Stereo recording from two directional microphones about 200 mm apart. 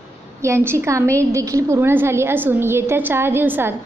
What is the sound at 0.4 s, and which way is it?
A woman's voice, 15° right (ahead or behind).